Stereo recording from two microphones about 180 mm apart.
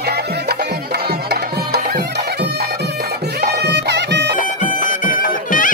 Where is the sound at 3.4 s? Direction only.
70° right (ahead or behind).